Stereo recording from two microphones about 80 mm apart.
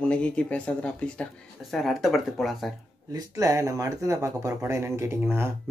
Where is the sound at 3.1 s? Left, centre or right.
Right.